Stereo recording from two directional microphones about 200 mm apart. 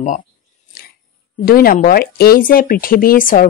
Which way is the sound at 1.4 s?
45° left (ahead or behind).